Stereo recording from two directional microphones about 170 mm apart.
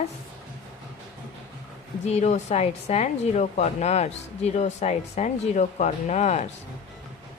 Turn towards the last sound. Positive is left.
turn(degrees=40)  # may be behind; listen again after turning